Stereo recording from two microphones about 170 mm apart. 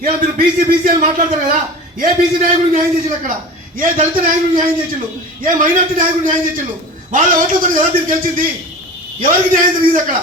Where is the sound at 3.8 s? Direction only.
55° right (ahead or behind).